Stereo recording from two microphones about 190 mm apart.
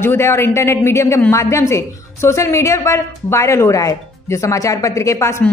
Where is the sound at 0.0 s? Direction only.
15° left (ahead or behind).